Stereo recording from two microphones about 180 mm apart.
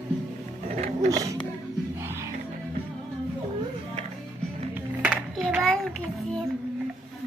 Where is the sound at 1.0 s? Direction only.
20° right (ahead or behind).